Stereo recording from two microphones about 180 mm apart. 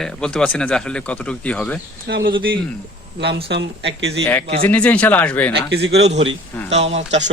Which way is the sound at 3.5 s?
75° right (ahead or behind).